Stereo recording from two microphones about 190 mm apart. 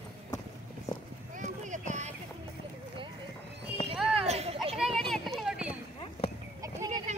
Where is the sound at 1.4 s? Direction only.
40° right (ahead or behind).